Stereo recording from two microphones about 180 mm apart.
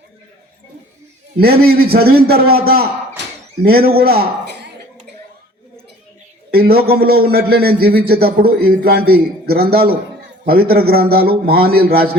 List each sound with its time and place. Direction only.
1.4 s a man's voice: 60° right (ahead or behind)
6.5 s a man's voice: 60° right (ahead or behind)